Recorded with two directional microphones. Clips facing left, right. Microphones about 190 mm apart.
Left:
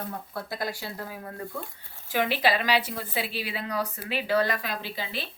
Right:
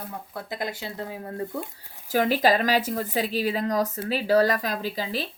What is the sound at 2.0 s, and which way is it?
A woman's voice, 40° right (ahead or behind).